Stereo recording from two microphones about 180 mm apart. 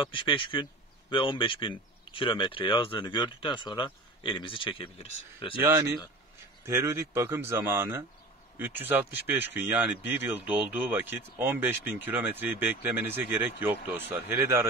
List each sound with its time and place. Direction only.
0.1 s speech: 30° left (ahead or behind)
5.6 s speech: 10° right (ahead or behind)